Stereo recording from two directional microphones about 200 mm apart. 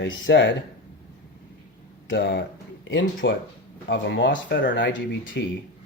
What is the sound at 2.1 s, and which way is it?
Speech, 60° left (ahead or behind).